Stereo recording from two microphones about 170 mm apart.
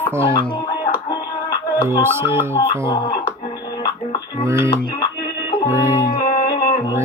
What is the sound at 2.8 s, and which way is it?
Speech, 25° left (ahead or behind).